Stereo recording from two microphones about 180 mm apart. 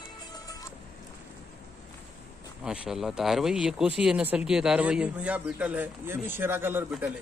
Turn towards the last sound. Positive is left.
turn(degrees=-5)  # may be behind; listen again after turning